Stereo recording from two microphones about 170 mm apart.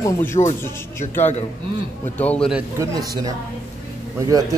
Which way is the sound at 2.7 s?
20° right (ahead or behind).